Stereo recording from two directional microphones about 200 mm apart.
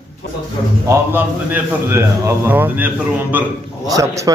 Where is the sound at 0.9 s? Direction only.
10° right (ahead or behind).